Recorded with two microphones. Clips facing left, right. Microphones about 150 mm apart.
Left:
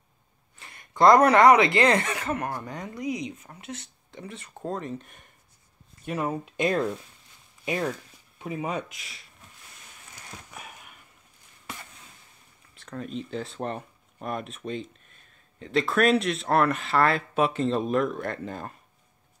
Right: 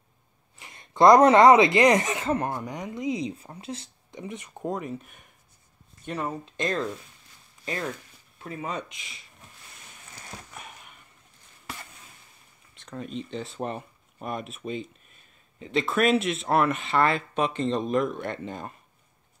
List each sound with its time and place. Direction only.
0.6 s speech: 20° right (ahead or behind); by 5.2 s 5° right (ahead or behind)
6.0 s speech: 10° left (ahead or behind)
10.5 s a sound: 5° left (ahead or behind)
12.7 s speech: centre (ahead or behind)